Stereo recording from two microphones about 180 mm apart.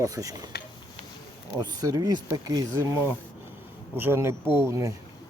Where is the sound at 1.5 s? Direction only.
20° right (ahead or behind).